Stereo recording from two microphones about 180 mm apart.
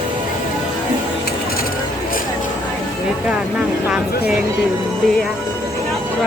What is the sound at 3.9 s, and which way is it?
Speech, 5° right (ahead or behind).